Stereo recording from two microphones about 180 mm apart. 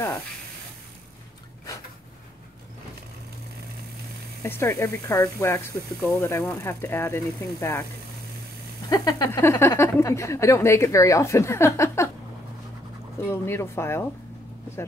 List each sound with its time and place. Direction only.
4.4 s speech: 15° left (ahead or behind)
8.8 s speech: 20° left (ahead or behind)
13.2 s speech: 15° left (ahead or behind)